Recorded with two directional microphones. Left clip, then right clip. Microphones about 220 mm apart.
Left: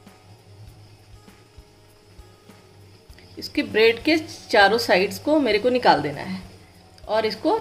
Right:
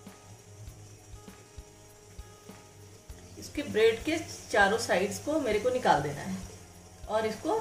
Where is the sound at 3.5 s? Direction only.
40° left (ahead or behind).